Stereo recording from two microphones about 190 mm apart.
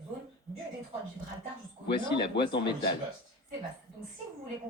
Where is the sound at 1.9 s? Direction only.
25° left (ahead or behind).